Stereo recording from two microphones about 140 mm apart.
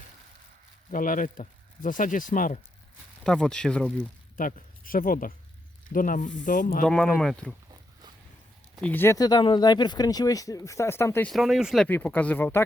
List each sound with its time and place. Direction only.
0.9 s speech: 75° left (ahead or behind)
3.2 s speech: 5° left (ahead or behind)
4.4 s speech: 80° left
5.9 s speech: 75° left (ahead or behind)
6.8 s speech: 5° left (ahead or behind)
8.8 s speech: 15° left (ahead or behind)
9.1 s speech: 30° left (ahead or behind)
11.3 s speech: centre (ahead or behind)
11.9 s speech: 15° left (ahead or behind)